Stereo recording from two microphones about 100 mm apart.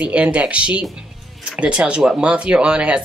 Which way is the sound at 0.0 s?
10° right (ahead or behind).